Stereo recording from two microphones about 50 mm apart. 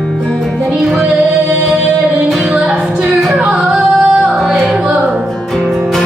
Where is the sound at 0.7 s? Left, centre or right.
Centre.